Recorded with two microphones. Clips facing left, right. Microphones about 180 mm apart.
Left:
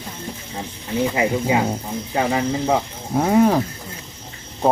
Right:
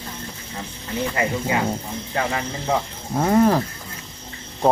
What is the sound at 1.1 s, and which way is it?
Speech, 20° left (ahead or behind).